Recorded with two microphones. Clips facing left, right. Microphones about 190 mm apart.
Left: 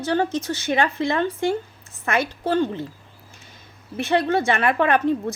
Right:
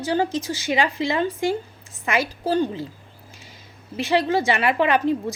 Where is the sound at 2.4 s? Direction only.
10° right (ahead or behind).